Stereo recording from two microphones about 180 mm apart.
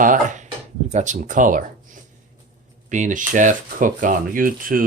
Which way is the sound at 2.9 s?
45° right (ahead or behind).